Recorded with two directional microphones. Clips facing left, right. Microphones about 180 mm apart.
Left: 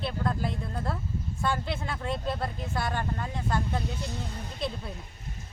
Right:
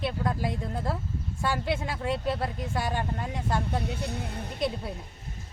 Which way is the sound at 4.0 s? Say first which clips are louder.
Right 2 dB; 60° right (ahead or behind).